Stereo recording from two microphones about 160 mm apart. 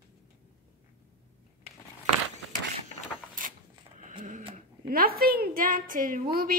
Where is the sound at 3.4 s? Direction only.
55° right (ahead or behind).